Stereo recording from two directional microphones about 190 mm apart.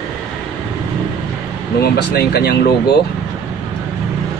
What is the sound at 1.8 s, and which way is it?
Speech, 60° left (ahead or behind).